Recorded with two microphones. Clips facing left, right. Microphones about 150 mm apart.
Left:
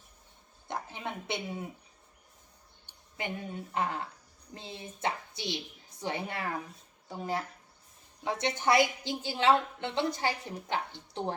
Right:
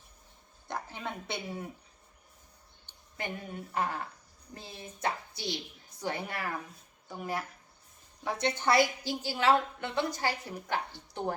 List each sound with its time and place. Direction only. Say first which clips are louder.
0.7 s speech: even; 20° left (ahead or behind)
2.8 s a woman's voice: left 1 dB; 15° left (ahead or behind)